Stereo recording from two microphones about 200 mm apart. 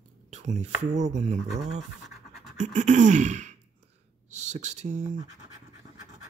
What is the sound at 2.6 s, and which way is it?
Sigh, 35° right (ahead or behind).